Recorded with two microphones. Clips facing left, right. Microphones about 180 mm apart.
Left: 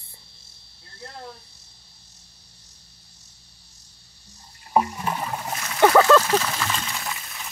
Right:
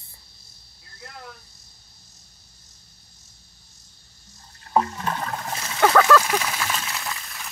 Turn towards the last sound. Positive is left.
turn(degrees=0)  # may be behind; listen again after turning